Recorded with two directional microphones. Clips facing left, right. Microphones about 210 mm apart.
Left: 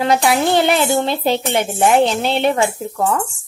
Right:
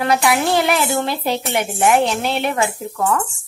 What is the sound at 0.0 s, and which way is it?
A woman's voice, 25° left (ahead or behind).